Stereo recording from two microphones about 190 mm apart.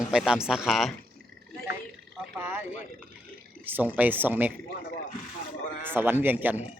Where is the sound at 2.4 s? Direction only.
10° right (ahead or behind).